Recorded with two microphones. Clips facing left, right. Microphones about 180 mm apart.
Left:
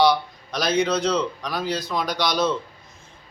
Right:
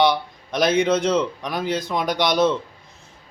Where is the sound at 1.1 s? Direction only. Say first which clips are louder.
Right 3 dB; 20° right (ahead or behind).